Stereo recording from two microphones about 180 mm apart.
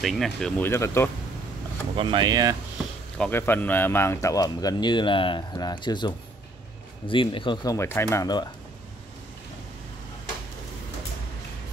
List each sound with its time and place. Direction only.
0.0 s speech: centre (ahead or behind)
0.7 s speech: 15° left (ahead or behind)
2.0 s speech: 25° right (ahead or behind)
3.2 s speech: 10° left (ahead or behind)